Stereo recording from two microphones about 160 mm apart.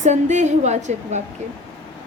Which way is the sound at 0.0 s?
45° right (ahead or behind).